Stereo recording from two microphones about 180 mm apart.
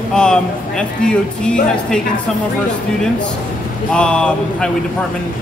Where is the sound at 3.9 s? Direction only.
5° left (ahead or behind).